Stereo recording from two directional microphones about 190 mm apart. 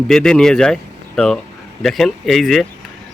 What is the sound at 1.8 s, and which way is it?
Speech, centre (ahead or behind).